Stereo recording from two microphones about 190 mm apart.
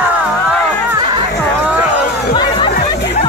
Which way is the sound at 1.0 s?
25° right (ahead or behind).